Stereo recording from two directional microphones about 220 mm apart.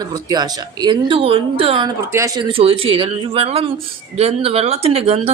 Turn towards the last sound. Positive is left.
turn(degrees=-25)  # may be behind; listen again after turning